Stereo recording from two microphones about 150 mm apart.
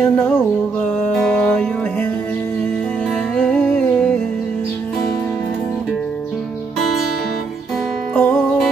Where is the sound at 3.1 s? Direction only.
5° left (ahead or behind).